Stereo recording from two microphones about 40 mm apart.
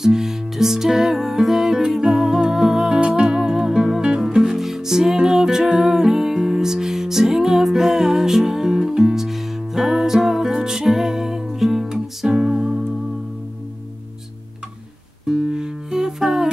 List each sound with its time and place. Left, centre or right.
0.0 s music: centre
15.2 s music: centre